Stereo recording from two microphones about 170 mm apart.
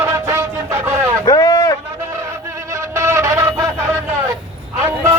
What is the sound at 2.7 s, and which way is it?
Music, 15° right (ahead or behind).